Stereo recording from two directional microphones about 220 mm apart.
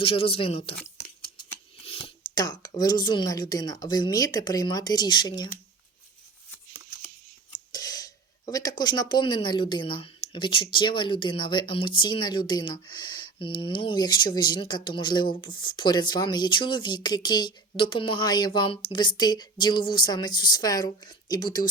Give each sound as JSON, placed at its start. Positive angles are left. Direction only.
{"t": 0.0, "sound": "speech", "side_deg": 25}
{"t": 1.8, "sound": "speech", "side_deg": 25}
{"t": 7.7, "sound": "a sound", "side_deg": 15}
{"t": 8.8, "sound": "speech", "side_deg": 20}